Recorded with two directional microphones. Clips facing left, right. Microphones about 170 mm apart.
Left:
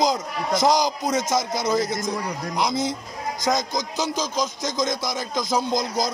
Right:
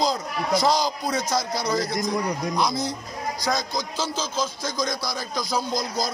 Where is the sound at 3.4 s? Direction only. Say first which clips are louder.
Left 4 dB; 20° left (ahead or behind).